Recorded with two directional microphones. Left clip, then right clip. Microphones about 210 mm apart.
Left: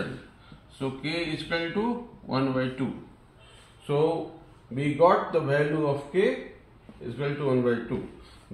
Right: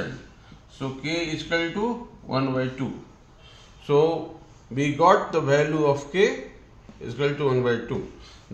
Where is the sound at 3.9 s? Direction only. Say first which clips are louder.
Right 5 dB; 25° right (ahead or behind).